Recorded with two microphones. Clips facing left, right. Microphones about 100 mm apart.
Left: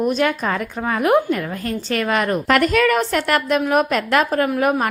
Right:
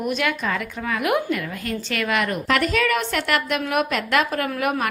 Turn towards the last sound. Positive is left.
turn(degrees=35)  # may be behind; listen again after turning